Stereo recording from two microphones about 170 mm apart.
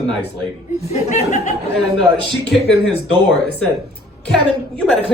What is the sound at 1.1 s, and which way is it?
Speech, 45° left (ahead or behind).